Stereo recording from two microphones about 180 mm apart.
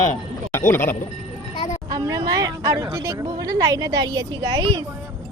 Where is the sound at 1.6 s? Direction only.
40° left (ahead or behind).